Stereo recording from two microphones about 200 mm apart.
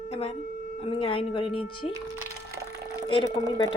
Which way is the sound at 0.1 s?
30° left (ahead or behind).